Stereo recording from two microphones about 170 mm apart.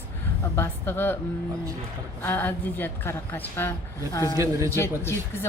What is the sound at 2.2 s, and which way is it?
Speech, 10° left (ahead or behind).